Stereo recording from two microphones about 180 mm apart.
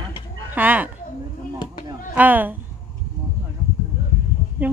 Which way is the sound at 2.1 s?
10° right (ahead or behind).